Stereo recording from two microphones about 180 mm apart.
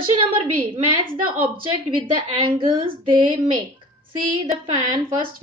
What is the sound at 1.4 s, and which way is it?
A woman's voice, 30° right (ahead or behind).